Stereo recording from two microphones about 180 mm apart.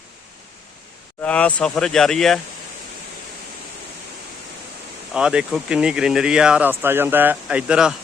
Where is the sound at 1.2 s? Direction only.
10° left (ahead or behind).